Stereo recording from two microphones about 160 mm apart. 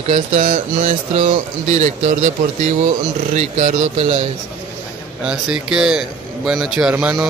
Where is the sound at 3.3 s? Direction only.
50° right (ahead or behind).